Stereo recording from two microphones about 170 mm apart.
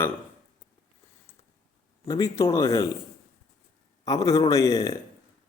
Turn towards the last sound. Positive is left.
turn(degrees=20)  # may be behind; listen again after turning